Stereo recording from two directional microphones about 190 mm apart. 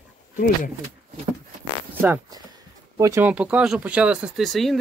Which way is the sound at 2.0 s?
10° right (ahead or behind).